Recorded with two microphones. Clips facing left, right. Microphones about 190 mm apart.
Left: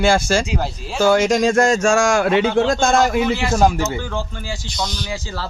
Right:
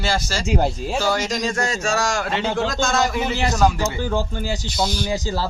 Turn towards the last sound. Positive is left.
turn(degrees=-40)  # may be behind; listen again after turning